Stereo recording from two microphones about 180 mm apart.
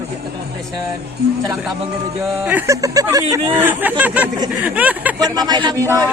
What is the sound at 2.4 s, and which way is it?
Speech, 10° right (ahead or behind).